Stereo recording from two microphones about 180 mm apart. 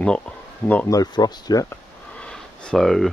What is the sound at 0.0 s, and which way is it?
Speech, 5° left (ahead or behind).